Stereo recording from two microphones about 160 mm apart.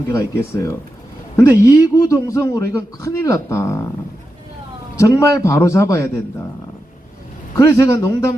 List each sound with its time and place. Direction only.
0.1 s a man's voice: 20° left (ahead or behind)
4.9 s a man's voice: 20° left (ahead or behind)
7.5 s a man's voice: 20° left (ahead or behind)